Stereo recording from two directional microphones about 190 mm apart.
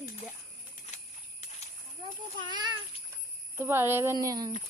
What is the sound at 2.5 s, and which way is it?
Speech, 20° right (ahead or behind).